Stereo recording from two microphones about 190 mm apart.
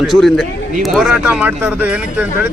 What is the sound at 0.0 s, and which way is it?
Speech, centre (ahead or behind).